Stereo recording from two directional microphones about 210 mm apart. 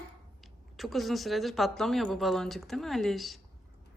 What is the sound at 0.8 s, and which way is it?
Speech, centre (ahead or behind).